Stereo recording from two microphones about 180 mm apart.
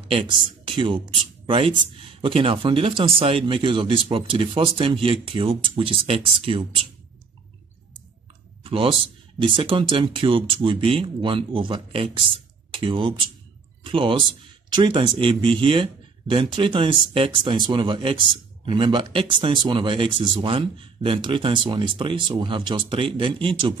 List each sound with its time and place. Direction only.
0.1 s speech: 30° right (ahead or behind)
8.6 s a man's voice: 30° right (ahead or behind)